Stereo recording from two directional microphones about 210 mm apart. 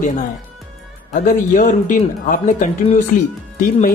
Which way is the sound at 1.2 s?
40° left (ahead or behind).